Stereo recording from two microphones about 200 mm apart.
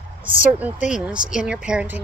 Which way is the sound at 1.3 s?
5° right (ahead or behind).